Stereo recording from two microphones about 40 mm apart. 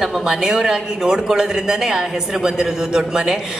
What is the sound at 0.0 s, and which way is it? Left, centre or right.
A woman's voice, centre.